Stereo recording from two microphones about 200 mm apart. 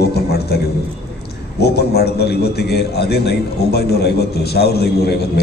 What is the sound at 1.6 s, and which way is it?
A man's voice, 55° left (ahead or behind).